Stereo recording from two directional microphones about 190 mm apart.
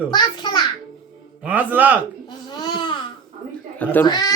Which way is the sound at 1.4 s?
10° right (ahead or behind).